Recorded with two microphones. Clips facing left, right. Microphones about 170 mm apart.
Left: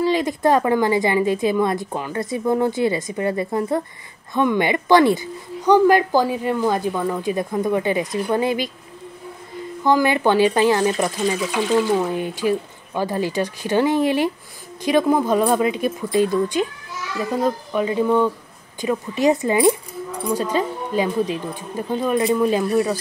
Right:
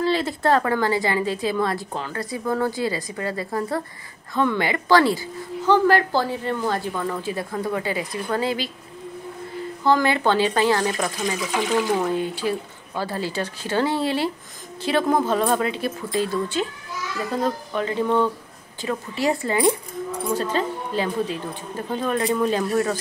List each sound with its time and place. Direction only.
0.0 s a woman's voice: 15° left (ahead or behind)
9.8 s a woman's voice: 15° left (ahead or behind)